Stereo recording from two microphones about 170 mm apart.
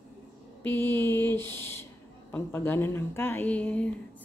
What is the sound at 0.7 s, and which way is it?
Speech, 10° left (ahead or behind).